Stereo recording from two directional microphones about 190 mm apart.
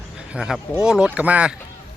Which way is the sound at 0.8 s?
5° right (ahead or behind).